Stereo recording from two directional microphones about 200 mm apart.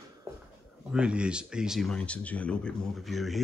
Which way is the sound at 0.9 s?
5° right (ahead or behind).